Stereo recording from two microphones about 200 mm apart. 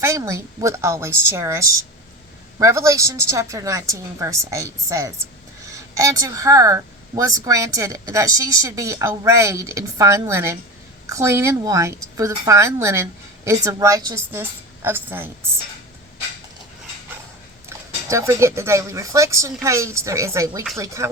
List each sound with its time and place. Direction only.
0.0 s speech: 15° right (ahead or behind)
17.7 s speech: 15° right (ahead or behind)